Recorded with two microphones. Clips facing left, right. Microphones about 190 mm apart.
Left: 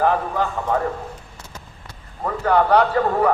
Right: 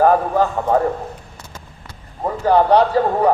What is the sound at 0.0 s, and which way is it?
Speech, 40° right (ahead or behind).